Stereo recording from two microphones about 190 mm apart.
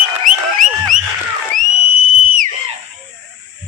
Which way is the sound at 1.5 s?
45° right (ahead or behind).